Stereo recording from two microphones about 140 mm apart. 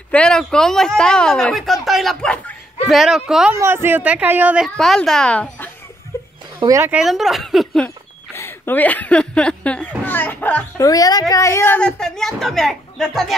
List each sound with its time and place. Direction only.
0.1 s speech: 5° left (ahead or behind)
2.9 s speech: 5° right (ahead or behind)
3.5 s speech: 15° right (ahead or behind)
4.7 s speech: centre (ahead or behind)
6.1 s chicken: 20° left (ahead or behind)
6.7 s speech: 15° right (ahead or behind)
7.0 s speech: 5° right (ahead or behind)
8.4 s speech: 15° left (ahead or behind)
10.8 s a woman's voice: 25° left (ahead or behind)
12.0 s speech: centre (ahead or behind)